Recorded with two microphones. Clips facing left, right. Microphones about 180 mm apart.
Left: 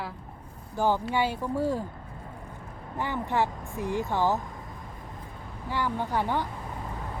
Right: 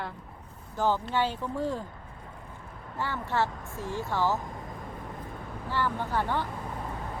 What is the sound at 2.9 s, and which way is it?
Speech, 15° left (ahead or behind).